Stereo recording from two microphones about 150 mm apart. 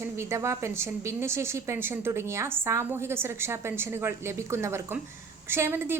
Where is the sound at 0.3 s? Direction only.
20° right (ahead or behind).